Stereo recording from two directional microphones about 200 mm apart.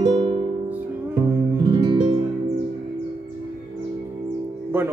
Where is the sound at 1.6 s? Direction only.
20° right (ahead or behind).